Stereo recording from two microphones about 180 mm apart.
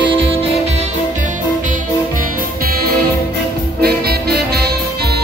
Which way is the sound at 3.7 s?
60° right (ahead or behind).